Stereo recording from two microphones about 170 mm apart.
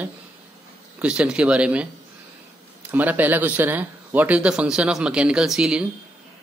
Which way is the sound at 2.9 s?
10° right (ahead or behind).